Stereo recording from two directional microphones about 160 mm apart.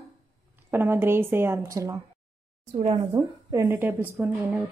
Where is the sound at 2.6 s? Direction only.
45° right (ahead or behind).